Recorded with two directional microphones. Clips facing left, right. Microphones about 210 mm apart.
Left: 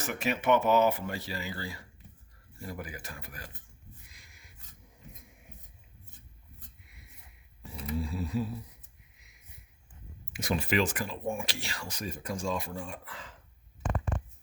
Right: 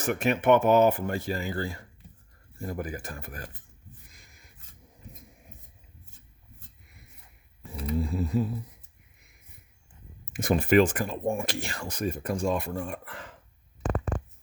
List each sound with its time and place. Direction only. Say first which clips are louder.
0.0 s speech: right 6 dB; 55° right (ahead or behind)
7.9 s speech: right 5 dB; 50° right (ahead or behind)
10.3 s speech: right 8 dB; 50° right (ahead or behind)